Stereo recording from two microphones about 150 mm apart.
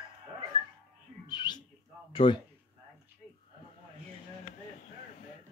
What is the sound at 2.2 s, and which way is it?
Speech, 35° left (ahead or behind).